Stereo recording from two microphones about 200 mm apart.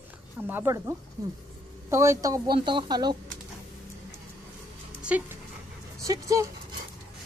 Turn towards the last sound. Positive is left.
turn(degrees=-15)  # may be behind; listen again after turning